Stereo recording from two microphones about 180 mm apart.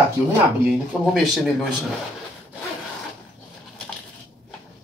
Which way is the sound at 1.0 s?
Centre (ahead or behind).